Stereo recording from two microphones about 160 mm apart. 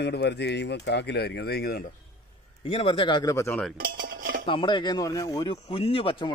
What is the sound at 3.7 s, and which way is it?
Dishes, 65° right (ahead or behind).